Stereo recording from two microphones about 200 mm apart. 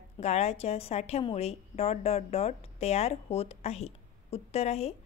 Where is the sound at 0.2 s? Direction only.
30° left (ahead or behind).